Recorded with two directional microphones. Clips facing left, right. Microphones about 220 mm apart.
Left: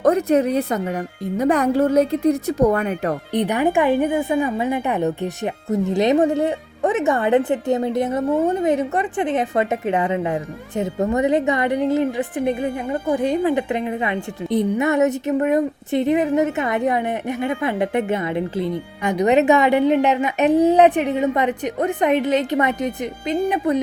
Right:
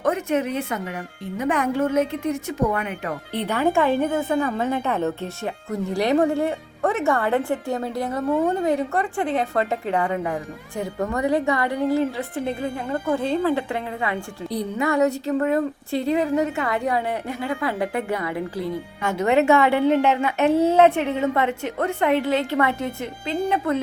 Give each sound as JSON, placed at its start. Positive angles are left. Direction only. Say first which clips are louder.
{"t": 0.0, "sound": "a woman's voice", "louder": "left 6 dB", "side_deg": 35}
{"t": 3.3, "sound": "a woman's voice", "louder": "left 2 dB", "side_deg": 15}